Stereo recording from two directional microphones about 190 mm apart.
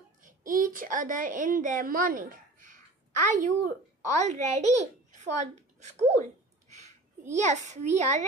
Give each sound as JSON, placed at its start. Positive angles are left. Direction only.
{"t": 0.2, "sound": "a child's voice", "side_deg": -45}